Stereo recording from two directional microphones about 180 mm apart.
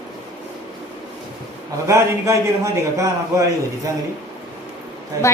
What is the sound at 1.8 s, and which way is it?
A man's voice, 15° right (ahead or behind).